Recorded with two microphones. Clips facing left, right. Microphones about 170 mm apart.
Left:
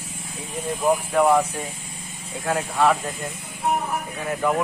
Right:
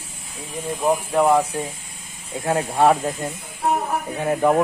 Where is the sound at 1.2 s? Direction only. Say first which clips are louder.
Right 1 dB; 10° right (ahead or behind).